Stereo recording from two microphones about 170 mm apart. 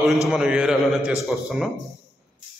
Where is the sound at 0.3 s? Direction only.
5° right (ahead or behind).